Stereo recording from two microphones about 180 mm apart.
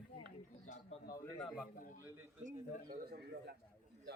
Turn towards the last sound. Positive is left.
turn(degrees=-60)  # may be behind; listen again after turning